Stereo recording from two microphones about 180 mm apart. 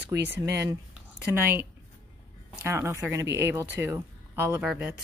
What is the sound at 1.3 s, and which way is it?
A woman's voice, 15° right (ahead or behind).